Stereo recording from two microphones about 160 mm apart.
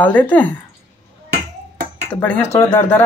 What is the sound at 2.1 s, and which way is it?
Speech, 10° left (ahead or behind).